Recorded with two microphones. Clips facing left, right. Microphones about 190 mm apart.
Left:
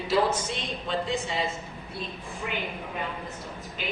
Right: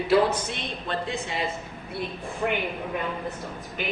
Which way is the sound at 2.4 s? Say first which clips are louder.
Right 8 dB; 65° right (ahead or behind).